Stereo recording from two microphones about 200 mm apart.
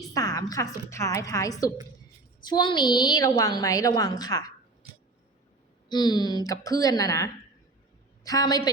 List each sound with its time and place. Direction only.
0.1 s a woman's voice: 15° left (ahead or behind)
5.9 s a woman's voice: 20° left (ahead or behind)